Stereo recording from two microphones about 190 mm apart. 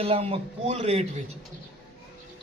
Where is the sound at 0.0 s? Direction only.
30° right (ahead or behind).